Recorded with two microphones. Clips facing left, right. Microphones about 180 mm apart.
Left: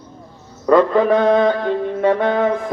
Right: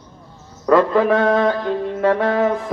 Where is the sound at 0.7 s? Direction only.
5° right (ahead or behind).